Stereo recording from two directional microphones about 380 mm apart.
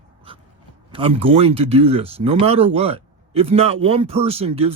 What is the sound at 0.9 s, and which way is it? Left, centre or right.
Speech, centre.